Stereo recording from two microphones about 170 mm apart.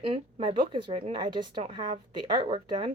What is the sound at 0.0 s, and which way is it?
Speech, 30° right (ahead or behind).